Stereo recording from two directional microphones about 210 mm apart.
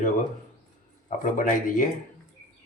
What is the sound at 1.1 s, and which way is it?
Speech, 40° left (ahead or behind).